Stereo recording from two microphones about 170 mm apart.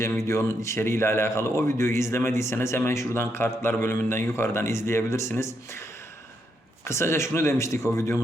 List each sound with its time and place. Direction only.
0.0 s speech: 15° left (ahead or behind)
6.8 s speech: 15° left (ahead or behind)